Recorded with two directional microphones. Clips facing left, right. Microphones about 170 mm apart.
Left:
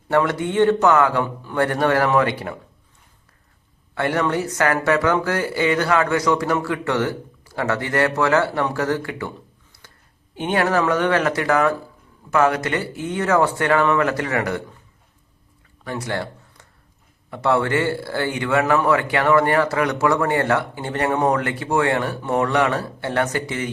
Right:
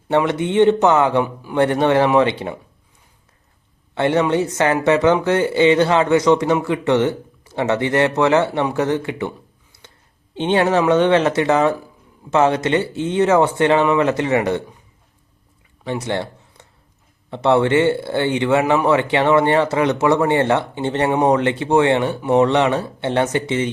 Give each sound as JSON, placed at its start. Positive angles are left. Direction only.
{"t": 0.2, "sound": "speech", "side_deg": -20}
{"t": 3.9, "sound": "speech", "side_deg": -20}
{"t": 9.7, "sound": "a sound", "side_deg": -20}
{"t": 10.3, "sound": "speech", "side_deg": -25}
{"t": 15.8, "sound": "a sound", "side_deg": -25}
{"t": 17.3, "sound": "speech", "side_deg": -20}